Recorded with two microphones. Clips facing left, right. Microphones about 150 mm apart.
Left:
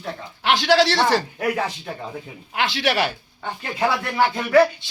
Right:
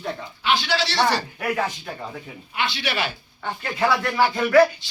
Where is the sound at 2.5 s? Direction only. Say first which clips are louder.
Left 5 dB; 90° left.